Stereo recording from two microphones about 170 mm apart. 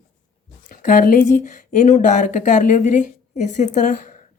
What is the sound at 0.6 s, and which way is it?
Speech, 55° left (ahead or behind).